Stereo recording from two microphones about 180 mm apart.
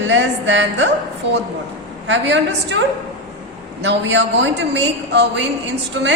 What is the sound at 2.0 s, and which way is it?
A woman's voice, 90° right.